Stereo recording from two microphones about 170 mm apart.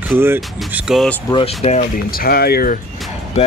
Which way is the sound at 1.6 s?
40° left (ahead or behind).